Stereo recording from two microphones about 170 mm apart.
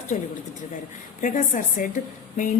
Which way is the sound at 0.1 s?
45° left (ahead or behind).